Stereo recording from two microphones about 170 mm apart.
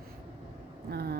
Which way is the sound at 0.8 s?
70° right (ahead or behind).